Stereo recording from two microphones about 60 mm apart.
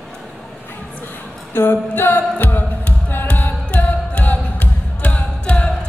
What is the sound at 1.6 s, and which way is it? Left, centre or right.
A capella, left.